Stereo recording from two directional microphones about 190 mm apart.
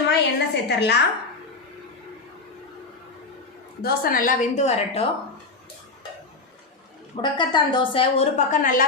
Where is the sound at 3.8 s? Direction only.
50° left (ahead or behind).